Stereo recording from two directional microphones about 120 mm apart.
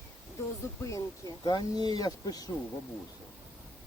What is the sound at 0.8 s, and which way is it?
Speech, 25° left (ahead or behind).